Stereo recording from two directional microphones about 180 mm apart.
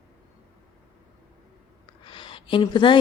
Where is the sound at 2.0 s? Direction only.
30° left (ahead or behind).